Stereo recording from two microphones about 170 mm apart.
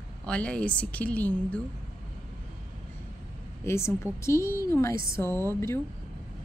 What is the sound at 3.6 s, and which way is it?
A woman's voice, 15° left (ahead or behind).